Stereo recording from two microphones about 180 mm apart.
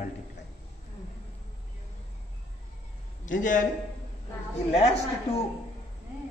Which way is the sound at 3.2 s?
45° left (ahead or behind).